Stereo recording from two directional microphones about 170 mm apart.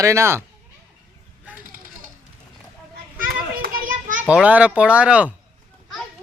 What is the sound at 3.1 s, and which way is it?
Children playing, 60° right (ahead or behind).